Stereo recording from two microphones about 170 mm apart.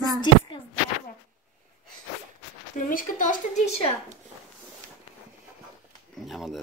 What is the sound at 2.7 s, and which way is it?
Speech, 50° left (ahead or behind).